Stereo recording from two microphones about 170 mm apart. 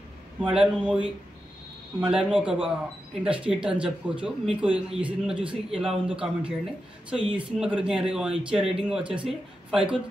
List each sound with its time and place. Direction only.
0.4 s a man's voice: 5° right (ahead or behind)